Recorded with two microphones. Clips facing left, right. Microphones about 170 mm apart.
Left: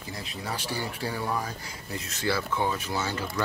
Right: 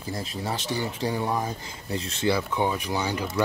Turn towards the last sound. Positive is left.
turn(degrees=-15)  # may be behind; listen again after turning